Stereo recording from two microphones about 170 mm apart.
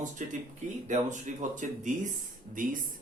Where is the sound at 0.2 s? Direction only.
50° right (ahead or behind).